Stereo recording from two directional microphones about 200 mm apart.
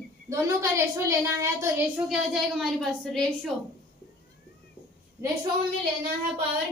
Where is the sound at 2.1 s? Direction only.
Centre (ahead or behind).